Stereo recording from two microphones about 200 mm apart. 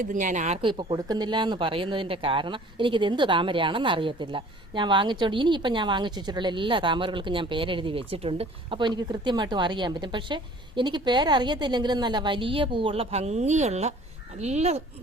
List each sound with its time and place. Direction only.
0.0 s speech: 40° right (ahead or behind)